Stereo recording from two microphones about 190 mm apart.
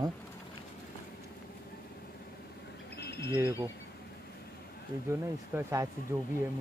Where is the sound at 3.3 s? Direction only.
15° right (ahead or behind).